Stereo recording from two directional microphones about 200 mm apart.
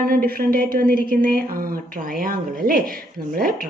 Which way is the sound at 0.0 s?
50° right (ahead or behind).